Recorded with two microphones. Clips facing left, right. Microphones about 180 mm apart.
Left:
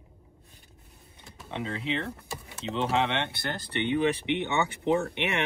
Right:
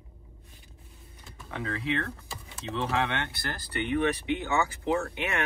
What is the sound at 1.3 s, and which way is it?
Speech, 20° left (ahead or behind).